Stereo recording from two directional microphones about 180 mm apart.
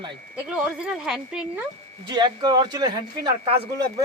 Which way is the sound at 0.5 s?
5° right (ahead or behind).